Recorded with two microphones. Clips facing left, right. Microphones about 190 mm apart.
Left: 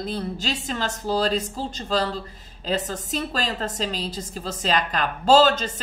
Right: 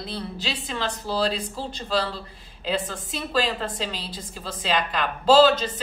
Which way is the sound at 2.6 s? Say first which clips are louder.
Left 1 dB; 40° left (ahead or behind).